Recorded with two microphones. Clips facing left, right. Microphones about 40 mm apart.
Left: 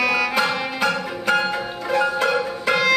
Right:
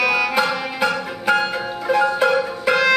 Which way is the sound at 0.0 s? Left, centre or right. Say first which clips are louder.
Right 2 dB; centre.